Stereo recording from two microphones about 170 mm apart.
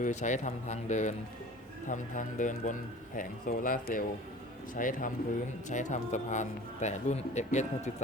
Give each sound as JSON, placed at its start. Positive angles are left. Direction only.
{"t": 0.0, "sound": "a man's voice", "side_deg": 45}